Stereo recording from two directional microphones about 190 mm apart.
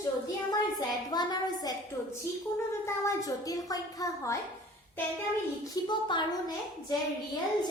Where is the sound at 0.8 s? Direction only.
20° left (ahead or behind).